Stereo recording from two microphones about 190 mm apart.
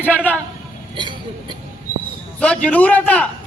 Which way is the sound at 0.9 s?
25° right (ahead or behind).